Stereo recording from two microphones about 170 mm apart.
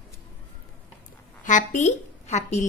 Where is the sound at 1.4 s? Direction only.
45° left (ahead or behind).